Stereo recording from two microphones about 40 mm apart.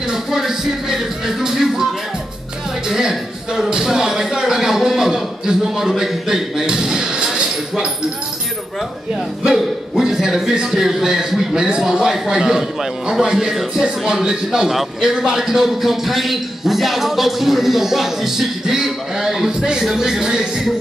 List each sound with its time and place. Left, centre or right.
0.1 s a man's voice: centre
2.9 s speech: centre
9.9 s a man's voice: centre
13.2 s a man's voice: right